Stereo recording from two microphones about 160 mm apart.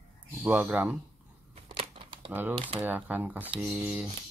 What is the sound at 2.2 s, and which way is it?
Speech, 10° right (ahead or behind).